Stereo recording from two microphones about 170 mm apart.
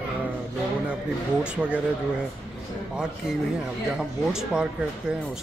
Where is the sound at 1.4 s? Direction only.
5° right (ahead or behind).